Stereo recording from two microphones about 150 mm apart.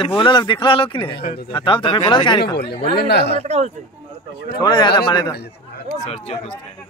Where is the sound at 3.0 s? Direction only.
90° left.